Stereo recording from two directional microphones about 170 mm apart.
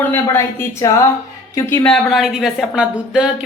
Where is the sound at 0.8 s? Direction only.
20° left (ahead or behind).